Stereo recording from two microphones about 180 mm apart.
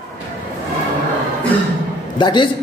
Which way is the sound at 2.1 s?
25° left (ahead or behind).